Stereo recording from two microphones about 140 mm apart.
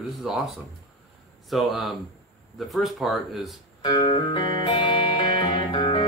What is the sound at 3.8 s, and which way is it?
Music, 35° left (ahead or behind).